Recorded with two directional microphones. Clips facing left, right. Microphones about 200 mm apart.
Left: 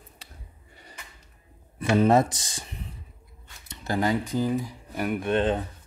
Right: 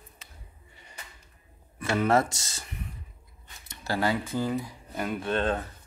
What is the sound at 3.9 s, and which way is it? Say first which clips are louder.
Speech: left 2 dB; 15° left (ahead or behind).